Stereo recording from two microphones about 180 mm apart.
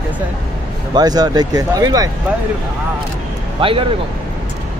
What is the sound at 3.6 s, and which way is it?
Speech, 30° right (ahead or behind).